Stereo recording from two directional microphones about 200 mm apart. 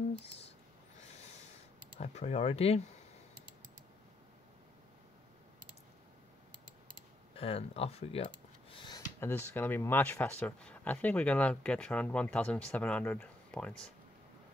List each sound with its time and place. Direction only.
2.0 s speech: 30° left (ahead or behind)
7.3 s speech: 30° left (ahead or behind)
8.8 s speech: 15° left (ahead or behind)